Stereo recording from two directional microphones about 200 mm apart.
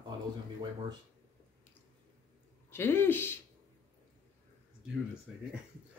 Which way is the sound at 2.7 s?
10° left (ahead or behind).